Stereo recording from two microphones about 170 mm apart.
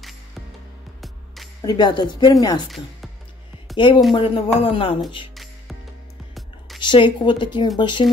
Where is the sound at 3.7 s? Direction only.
25° left (ahead or behind).